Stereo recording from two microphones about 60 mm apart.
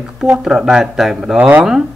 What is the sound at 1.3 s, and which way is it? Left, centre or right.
Speech, right.